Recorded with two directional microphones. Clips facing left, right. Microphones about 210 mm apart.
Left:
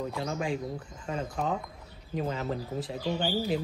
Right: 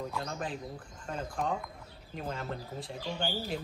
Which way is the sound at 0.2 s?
Centre (ahead or behind).